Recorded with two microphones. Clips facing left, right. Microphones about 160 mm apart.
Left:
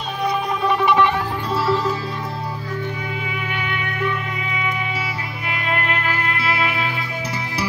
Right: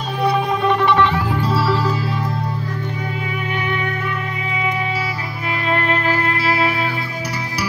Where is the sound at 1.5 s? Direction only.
5° right (ahead or behind).